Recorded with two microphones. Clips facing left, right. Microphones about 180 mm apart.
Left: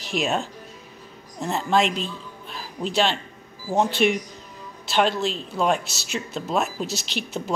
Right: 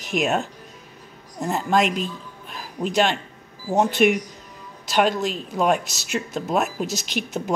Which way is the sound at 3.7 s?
5° right (ahead or behind).